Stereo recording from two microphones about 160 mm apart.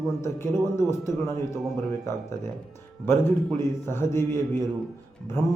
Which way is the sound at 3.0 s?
15° left (ahead or behind).